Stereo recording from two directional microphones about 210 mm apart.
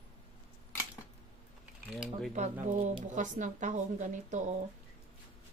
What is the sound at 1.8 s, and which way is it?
Speech, centre (ahead or behind).